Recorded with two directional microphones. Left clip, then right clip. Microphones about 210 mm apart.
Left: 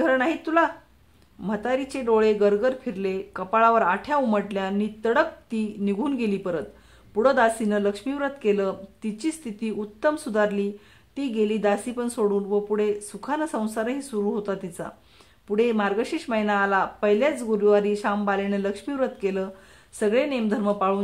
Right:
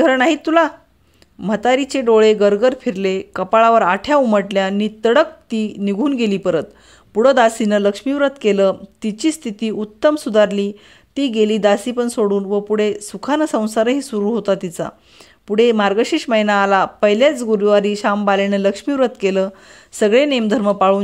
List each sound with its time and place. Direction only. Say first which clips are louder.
0.0 s speech: right 8 dB; 35° right (ahead or behind)